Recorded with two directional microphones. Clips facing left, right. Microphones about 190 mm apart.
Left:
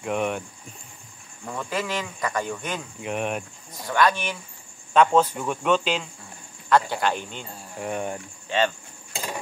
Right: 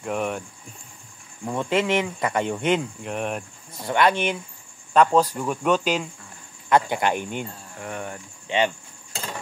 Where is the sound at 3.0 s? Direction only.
5° left (ahead or behind).